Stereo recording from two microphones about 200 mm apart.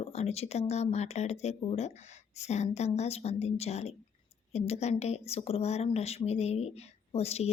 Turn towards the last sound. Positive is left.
turn(degrees=30)  # may be behind; listen again after turning